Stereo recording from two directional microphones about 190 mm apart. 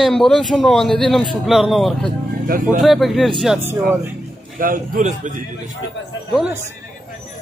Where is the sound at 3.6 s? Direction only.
10° right (ahead or behind).